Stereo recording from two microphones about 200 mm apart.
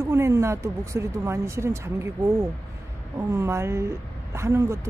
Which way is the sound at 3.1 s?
15° right (ahead or behind).